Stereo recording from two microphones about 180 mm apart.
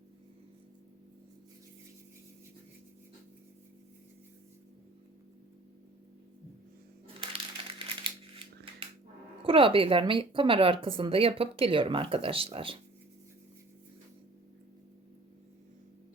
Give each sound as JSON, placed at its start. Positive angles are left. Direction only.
{"t": 8.8, "sound": "music", "side_deg": -30}
{"t": 9.4, "sound": "a woman's voice", "side_deg": -30}